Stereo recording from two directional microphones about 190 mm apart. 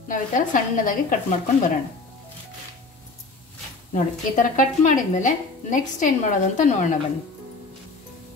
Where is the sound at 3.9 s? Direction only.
40° left (ahead or behind).